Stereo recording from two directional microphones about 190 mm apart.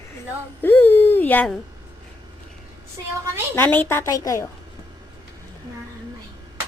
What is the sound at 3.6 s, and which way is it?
Speech, 10° left (ahead or behind).